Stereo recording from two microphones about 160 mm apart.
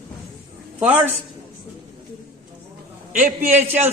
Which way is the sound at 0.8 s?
10° right (ahead or behind).